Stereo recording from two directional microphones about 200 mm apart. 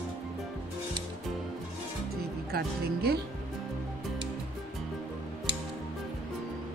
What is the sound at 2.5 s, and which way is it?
Speech, 50° right (ahead or behind).